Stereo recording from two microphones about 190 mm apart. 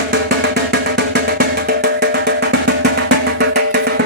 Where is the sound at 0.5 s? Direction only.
60° right (ahead or behind).